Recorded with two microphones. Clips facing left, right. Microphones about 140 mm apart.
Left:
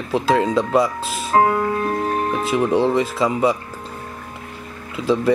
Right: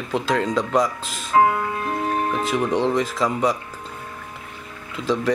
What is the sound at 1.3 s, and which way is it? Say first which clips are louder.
Music: left 1 dB; 40° left (ahead or behind).